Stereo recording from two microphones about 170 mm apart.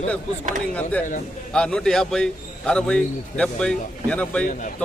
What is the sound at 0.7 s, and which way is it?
A man's voice, 10° left (ahead or behind).